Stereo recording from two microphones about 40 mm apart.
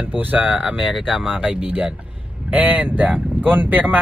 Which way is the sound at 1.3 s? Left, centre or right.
Right.